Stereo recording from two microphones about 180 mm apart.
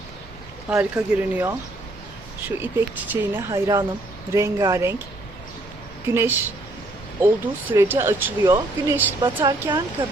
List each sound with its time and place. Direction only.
0.7 s speech: 5° right (ahead or behind)
2.6 s speech: 10° right (ahead or behind)
6.1 s speech: 15° right (ahead or behind)
7.7 s speech: 15° right (ahead or behind)
9.2 s speech: 25° right (ahead or behind)